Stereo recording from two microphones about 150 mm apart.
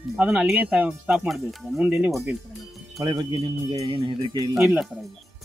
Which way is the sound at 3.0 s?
25° right (ahead or behind).